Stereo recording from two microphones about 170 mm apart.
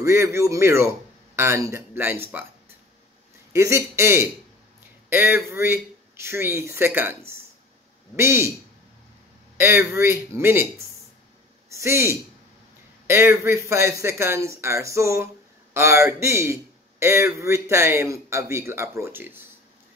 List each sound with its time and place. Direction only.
0.0 s speech: 15° right (ahead or behind)
3.5 s speech: 15° right (ahead or behind)
9.6 s speech: 15° right (ahead or behind)
11.7 s speech: 15° right (ahead or behind)